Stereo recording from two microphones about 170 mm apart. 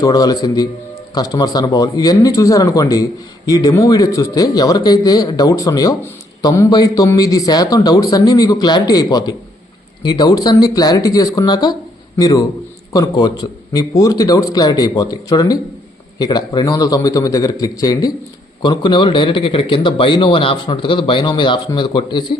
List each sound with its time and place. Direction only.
0.0 s speech: 20° left (ahead or behind)